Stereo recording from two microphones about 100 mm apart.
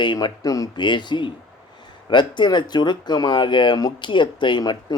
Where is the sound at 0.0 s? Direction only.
50° left (ahead or behind).